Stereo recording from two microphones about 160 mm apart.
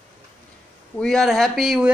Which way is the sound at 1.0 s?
Centre (ahead or behind).